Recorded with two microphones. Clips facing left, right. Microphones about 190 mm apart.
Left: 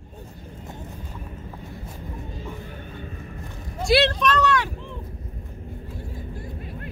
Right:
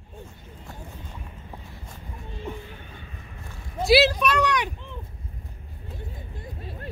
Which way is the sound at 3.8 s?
5° right (ahead or behind).